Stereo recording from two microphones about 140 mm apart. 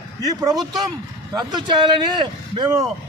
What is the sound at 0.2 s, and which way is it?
Speech, 25° right (ahead or behind).